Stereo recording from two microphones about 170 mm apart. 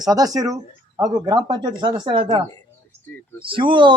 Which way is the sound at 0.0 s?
20° right (ahead or behind).